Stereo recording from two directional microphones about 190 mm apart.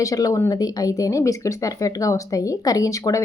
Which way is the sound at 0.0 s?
20° left (ahead or behind).